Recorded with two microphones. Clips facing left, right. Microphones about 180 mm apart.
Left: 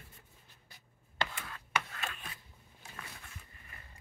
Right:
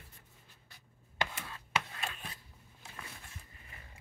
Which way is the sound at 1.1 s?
15° right (ahead or behind).